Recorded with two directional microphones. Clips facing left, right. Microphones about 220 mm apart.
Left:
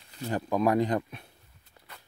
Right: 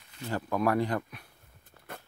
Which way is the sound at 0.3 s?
15° left (ahead or behind).